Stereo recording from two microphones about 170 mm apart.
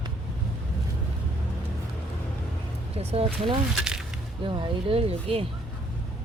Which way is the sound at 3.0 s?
35° right (ahead or behind).